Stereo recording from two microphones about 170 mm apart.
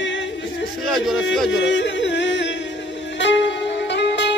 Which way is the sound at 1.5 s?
90° left.